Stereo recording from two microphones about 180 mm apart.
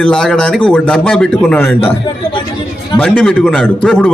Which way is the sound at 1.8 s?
30° left (ahead or behind).